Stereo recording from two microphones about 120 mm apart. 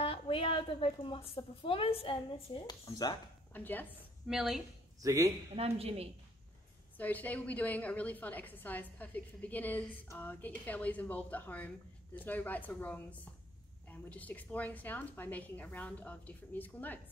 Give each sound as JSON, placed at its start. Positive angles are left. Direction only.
{"t": 0.0, "sound": "a woman's voice", "side_deg": 50}
{"t": 3.5, "sound": "a woman's voice", "side_deg": 15}
{"t": 4.3, "sound": "a woman's voice", "side_deg": -5}
{"t": 5.0, "sound": "speech", "side_deg": -25}
{"t": 5.6, "sound": "a woman's voice", "side_deg": -55}
{"t": 7.0, "sound": "a woman's voice", "side_deg": 15}